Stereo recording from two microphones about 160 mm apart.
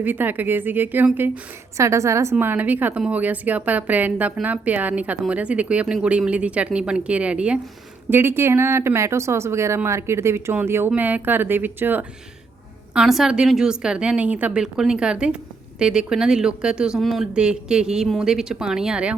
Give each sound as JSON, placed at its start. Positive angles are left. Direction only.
{"t": 0.0, "sound": "a woman's voice", "side_deg": -10}